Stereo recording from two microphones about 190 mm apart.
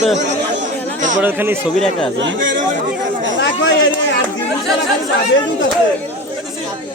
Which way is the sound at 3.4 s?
70° left (ahead or behind).